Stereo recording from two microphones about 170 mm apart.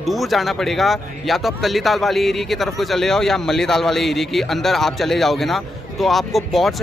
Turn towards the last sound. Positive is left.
turn(degrees=0)  # may be behind; listen again after turning